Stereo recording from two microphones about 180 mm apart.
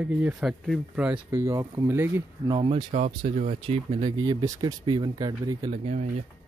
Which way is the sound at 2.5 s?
30° right (ahead or behind).